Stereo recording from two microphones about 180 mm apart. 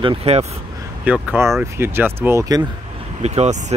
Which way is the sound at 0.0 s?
30° right (ahead or behind).